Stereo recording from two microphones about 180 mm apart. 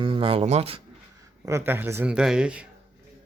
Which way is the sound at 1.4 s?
15° right (ahead or behind).